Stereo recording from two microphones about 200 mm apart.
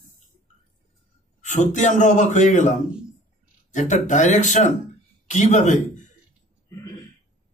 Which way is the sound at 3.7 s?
35° left (ahead or behind).